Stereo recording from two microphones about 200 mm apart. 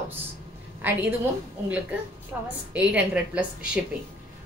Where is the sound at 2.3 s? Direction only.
10° right (ahead or behind).